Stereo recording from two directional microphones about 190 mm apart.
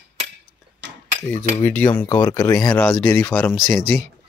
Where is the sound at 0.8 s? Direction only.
65° right (ahead or behind).